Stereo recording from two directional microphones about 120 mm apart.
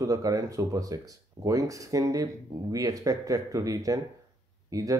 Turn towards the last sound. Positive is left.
turn(degrees=-30)  # may be behind; listen again after turning